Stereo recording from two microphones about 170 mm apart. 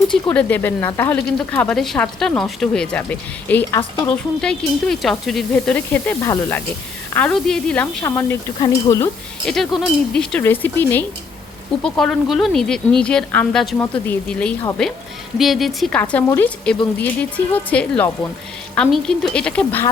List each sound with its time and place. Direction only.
0.1 s speech: 5° left (ahead or behind)
6.2 s stir: 20° left (ahead or behind)
7.1 s a woman's voice: 10° left (ahead or behind)
8.5 s stir: 20° left (ahead or behind)
9.7 s speech: centre (ahead or behind)